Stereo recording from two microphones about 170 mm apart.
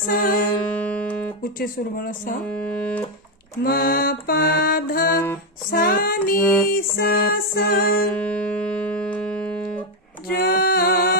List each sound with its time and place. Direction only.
0.1 s mantra: 55° left (ahead or behind)
0.7 s music: 5° left (ahead or behind)
1.5 s mantra: 55° left (ahead or behind)
2.5 s speech: 5° left (ahead or behind)
3.6 s mantra: 60° left (ahead or behind)
8.1 s music: 5° left (ahead or behind)
10.4 s music: 60° left (ahead or behind)